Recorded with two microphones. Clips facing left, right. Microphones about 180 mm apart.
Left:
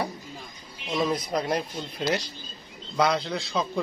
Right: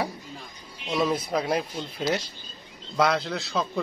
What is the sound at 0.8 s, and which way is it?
A man's voice, 5° right (ahead or behind).